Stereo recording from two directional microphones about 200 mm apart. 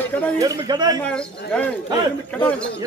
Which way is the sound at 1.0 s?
5° left (ahead or behind).